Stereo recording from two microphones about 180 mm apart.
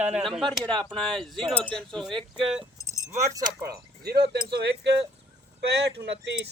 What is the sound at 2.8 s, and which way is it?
Speech, 20° right (ahead or behind).